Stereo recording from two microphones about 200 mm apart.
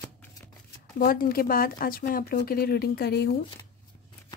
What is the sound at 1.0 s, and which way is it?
Speech, 45° left (ahead or behind).